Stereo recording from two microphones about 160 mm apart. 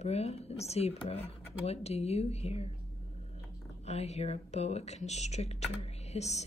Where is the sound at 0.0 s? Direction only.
40° left (ahead or behind).